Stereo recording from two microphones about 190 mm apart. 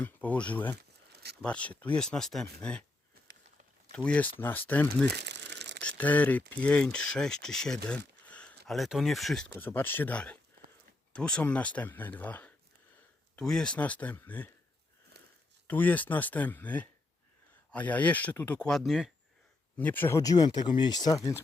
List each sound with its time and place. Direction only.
0.0 s speech: 10° left (ahead or behind)
1.1 s a sound: 60° right (ahead or behind)
1.4 s speech: 5° left (ahead or behind)
3.9 s speech: 5° left (ahead or behind)
5.0 s crumpling: 60° right (ahead or behind)
5.8 s speech: 10° left (ahead or behind)
15.1 s a sound: 60° right (ahead or behind)
15.6 s speech: 10° left (ahead or behind)